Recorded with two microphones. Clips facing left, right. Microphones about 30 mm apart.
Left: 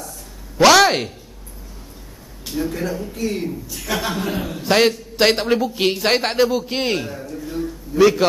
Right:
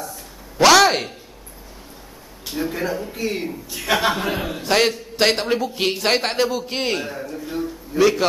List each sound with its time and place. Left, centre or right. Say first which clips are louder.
0.6 s a man's voice: left 1 dB; centre
2.4 s a man's voice: left 1 dB; centre
4.6 s a man's voice: left 3 dB; centre
7.1 s a sound: right 1 dB; centre
8.0 s a man's voice: left 3 dB; centre